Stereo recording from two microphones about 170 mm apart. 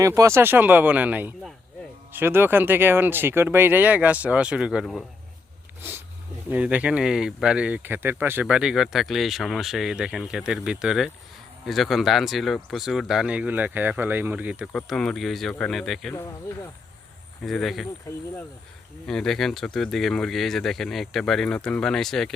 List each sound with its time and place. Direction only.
0.0 s speech: 15° right (ahead or behind); by 5.0 s centre (ahead or behind)
6.5 s speech: 10° right (ahead or behind)
14.7 s speech: 5° left (ahead or behind)
17.4 s speech: centre (ahead or behind)
19.0 s speech: 5° left (ahead or behind)